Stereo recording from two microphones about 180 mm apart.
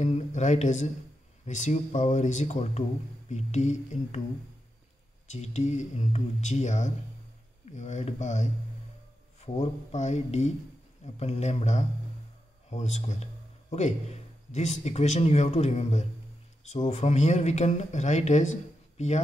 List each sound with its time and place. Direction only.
0.0 s speech: 40° left (ahead or behind)
5.3 s speech: 40° left (ahead or behind)